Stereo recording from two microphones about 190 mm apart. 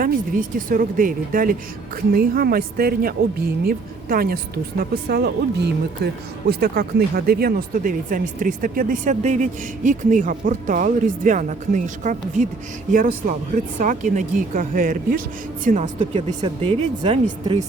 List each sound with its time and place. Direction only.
0.0 s a woman's voice: 45° right (ahead or behind)
16.4 s speech: 25° right (ahead or behind)